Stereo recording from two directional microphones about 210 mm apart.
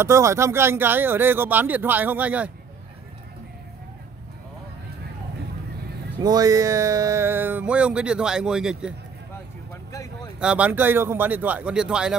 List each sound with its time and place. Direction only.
0.0 s speech: 15° right (ahead or behind)
6.1 s speech: 15° right (ahead or behind)
9.9 s a sound: 15° left (ahead or behind)
10.4 s speech: 5° right (ahead or behind)